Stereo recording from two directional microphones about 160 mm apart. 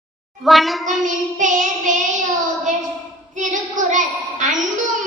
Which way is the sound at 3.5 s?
50° right (ahead or behind).